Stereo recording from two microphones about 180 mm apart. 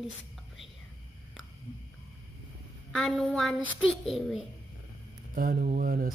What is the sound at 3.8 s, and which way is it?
Speech, centre (ahead or behind).